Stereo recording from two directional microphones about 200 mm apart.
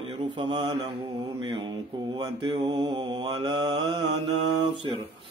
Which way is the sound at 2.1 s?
25° right (ahead or behind).